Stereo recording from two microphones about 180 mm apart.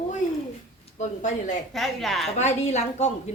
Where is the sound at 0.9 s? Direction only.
40° left (ahead or behind).